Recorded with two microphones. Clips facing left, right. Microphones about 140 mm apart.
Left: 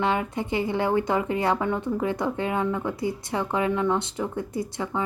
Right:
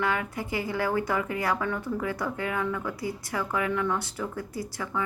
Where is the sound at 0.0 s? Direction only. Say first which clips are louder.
Left 4 dB; 25° left (ahead or behind).